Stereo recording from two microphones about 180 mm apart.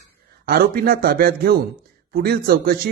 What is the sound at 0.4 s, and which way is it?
A man's voice, 55° right (ahead or behind).